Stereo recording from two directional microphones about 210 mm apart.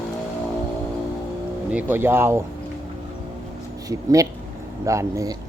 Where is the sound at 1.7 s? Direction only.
10° right (ahead or behind).